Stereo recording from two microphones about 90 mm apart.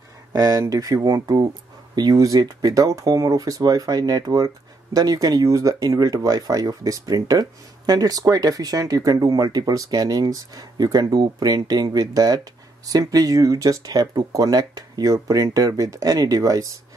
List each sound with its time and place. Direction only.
0.3 s speech: 45° right (ahead or behind)